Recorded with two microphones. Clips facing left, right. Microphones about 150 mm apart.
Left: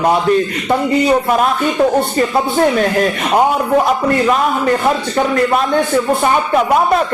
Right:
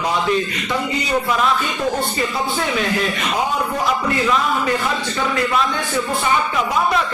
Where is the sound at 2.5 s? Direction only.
45° left (ahead or behind).